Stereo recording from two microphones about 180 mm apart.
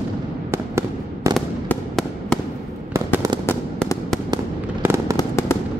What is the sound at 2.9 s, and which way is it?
Fireworks, 15° right (ahead or behind).